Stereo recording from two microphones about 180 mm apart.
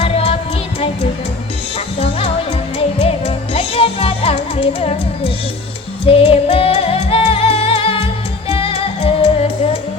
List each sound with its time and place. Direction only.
0.0 s music: 35° left (ahead or behind)
2.0 s music: 30° left (ahead or behind)